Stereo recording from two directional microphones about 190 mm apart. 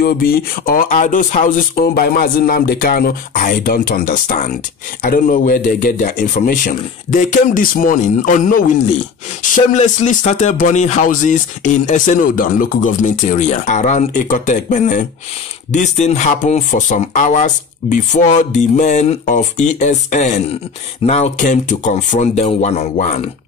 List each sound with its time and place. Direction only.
0.0 s speech: 50° left (ahead or behind)